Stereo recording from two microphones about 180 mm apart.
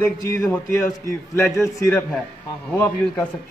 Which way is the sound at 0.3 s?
15° left (ahead or behind).